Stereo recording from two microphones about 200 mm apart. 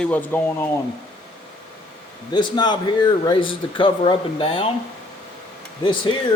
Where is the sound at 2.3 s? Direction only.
20° left (ahead or behind).